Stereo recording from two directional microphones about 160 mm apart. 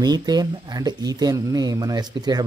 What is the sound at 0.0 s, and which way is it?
Speech, 25° right (ahead or behind).